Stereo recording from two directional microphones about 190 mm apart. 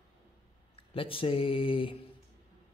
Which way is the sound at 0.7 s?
30° left (ahead or behind).